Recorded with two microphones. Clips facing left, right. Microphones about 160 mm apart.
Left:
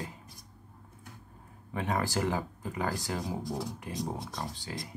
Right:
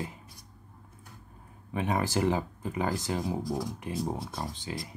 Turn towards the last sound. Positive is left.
turn(degrees=-20)  # may be behind; listen again after turning